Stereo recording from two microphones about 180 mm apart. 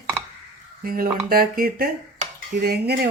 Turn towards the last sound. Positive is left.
turn(degrees=-60)  # may be behind; listen again after turning